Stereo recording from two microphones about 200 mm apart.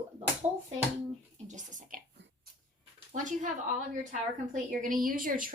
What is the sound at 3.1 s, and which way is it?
Speech, 40° right (ahead or behind).